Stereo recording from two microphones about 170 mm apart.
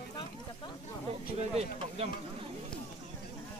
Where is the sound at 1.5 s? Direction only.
35° right (ahead or behind).